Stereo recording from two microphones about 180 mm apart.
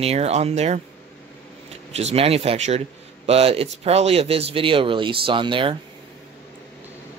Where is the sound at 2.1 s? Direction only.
35° right (ahead or behind).